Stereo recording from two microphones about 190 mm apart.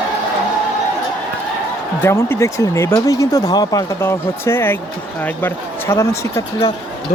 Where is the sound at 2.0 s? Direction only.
15° left (ahead or behind).